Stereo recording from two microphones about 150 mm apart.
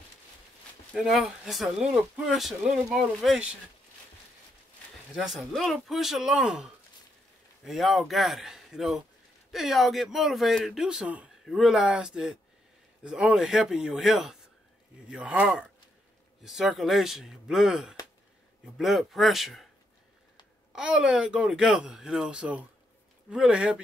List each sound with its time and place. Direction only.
0.9 s speech: centre (ahead or behind)
5.1 s speech: centre (ahead or behind)
20.7 s speech: 5° right (ahead or behind)